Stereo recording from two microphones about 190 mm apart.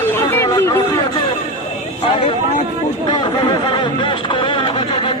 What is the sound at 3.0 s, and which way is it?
Music, 25° left (ahead or behind).